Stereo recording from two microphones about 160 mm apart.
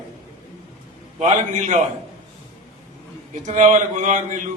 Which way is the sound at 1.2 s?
45° right (ahead or behind).